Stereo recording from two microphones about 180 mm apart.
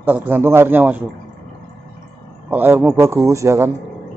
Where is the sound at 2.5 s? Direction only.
10° right (ahead or behind).